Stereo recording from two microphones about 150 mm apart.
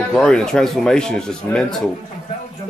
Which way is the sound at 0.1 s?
5° left (ahead or behind).